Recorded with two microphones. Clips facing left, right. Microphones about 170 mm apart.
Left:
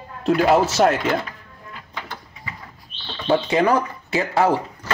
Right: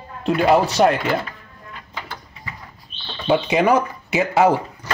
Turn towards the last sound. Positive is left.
turn(degrees=-15)  # may be behind; listen again after turning